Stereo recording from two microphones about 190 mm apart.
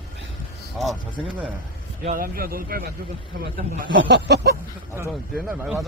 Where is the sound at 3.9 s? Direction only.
65° right (ahead or behind).